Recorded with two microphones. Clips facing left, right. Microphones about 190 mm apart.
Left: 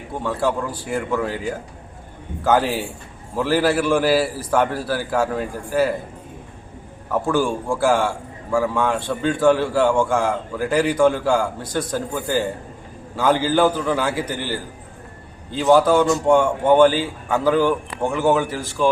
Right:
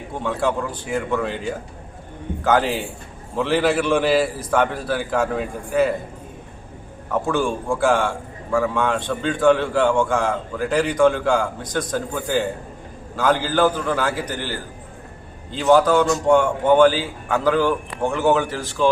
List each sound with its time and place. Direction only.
0.2 s a man's voice: 5° left (ahead or behind)
7.1 s a man's voice: 5° left (ahead or behind)